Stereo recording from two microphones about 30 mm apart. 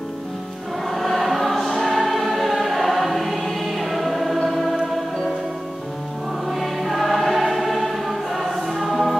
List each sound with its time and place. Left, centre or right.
0.8 s choir: centre
6.5 s choir: centre